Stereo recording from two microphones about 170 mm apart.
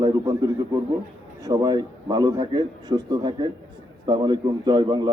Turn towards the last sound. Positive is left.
turn(degrees=-25)  # may be behind; listen again after turning